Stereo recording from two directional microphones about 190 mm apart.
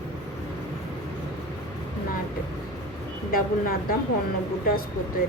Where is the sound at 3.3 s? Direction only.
50° left (ahead or behind).